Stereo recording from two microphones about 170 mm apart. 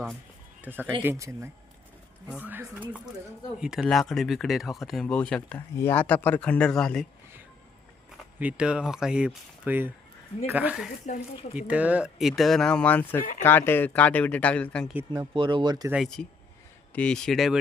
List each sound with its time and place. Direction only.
0.6 s speech: 10° right (ahead or behind)
8.4 s speech: 5° right (ahead or behind)
11.0 s speech: 45° left (ahead or behind)
11.5 s speech: 10° right (ahead or behind)
15.4 s speech: 30° right (ahead or behind)
15.9 s speech: centre (ahead or behind)